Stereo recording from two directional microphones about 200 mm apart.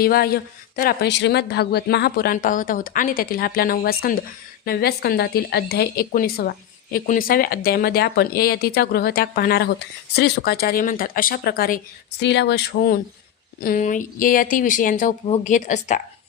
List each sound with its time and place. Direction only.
0.0 s speech: 50° left (ahead or behind)